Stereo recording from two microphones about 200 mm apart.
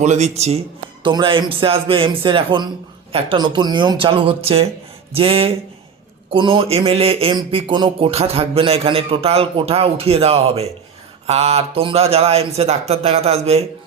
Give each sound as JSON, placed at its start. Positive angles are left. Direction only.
{"t": 0.0, "sound": "speech", "side_deg": -35}